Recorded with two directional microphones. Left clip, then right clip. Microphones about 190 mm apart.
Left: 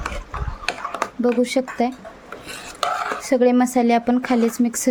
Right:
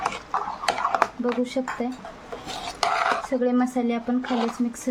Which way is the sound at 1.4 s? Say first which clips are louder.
Left 7 dB; 40° left (ahead or behind).